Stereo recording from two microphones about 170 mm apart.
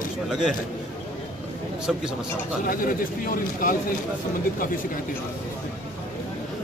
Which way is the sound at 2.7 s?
55° left (ahead or behind).